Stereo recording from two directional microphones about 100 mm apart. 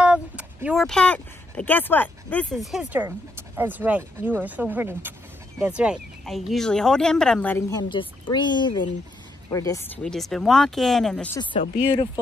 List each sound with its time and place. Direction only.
0.0 s a sound: 15° right (ahead or behind)
0.7 s speech: 5° left (ahead or behind)
2.5 s speech: centre (ahead or behind)
3.5 s speech: 20° right (ahead or behind)
6.2 s speech: centre (ahead or behind); by 7.6 s 15° left (ahead or behind)
7.7 s speech: 50° left (ahead or behind)
9.5 s speech: 30° left (ahead or behind)
10.0 s speech: 5° left (ahead or behind)
11.5 s speech: 60° left (ahead or behind)